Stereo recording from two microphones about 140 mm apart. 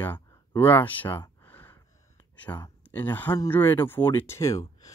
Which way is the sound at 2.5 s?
20° left (ahead or behind).